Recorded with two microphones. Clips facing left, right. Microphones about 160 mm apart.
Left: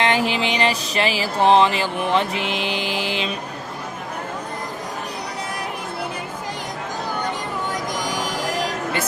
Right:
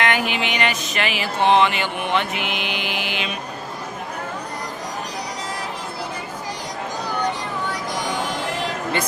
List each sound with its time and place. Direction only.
0.0 s music: 30° left (ahead or behind)